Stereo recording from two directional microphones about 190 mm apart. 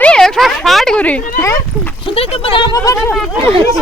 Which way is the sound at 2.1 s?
25° left (ahead or behind).